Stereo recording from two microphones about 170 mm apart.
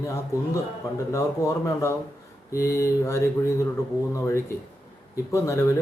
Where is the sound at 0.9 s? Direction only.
20° left (ahead or behind).